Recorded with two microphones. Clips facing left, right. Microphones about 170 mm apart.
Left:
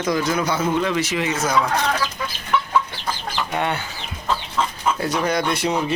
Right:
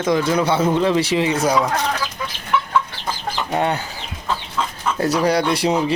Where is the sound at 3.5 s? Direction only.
35° right (ahead or behind).